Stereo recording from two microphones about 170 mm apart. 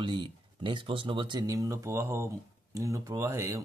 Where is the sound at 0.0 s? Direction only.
30° right (ahead or behind).